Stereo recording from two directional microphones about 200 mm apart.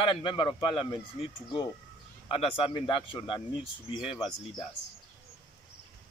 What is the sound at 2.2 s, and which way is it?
Speech, 25° left (ahead or behind).